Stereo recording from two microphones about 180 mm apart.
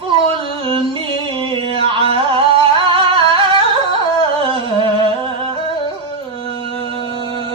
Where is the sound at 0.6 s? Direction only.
30° right (ahead or behind).